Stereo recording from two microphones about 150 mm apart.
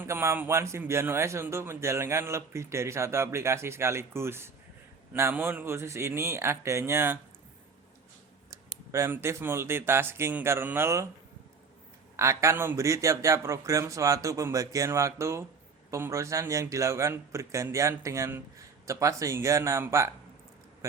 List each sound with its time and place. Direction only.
0.0 s speech: 15° right (ahead or behind)
8.9 s speech: 20° right (ahead or behind)
12.1 s speech: 20° right (ahead or behind)